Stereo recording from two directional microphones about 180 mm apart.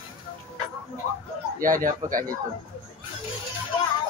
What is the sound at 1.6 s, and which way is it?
Speech, 50° right (ahead or behind).